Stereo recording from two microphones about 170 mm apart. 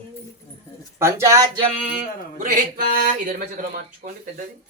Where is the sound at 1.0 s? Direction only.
15° right (ahead or behind).